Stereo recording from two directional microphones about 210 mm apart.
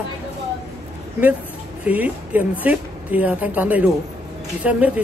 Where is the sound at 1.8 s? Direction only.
5° right (ahead or behind).